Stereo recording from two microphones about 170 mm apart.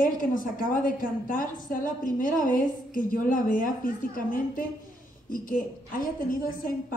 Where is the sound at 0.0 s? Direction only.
50° left (ahead or behind).